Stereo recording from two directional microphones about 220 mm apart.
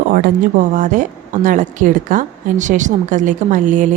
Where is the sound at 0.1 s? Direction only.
35° right (ahead or behind).